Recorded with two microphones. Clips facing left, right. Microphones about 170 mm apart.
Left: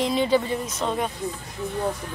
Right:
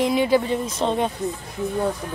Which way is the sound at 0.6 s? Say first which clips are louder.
Right 4 dB; 25° right (ahead or behind).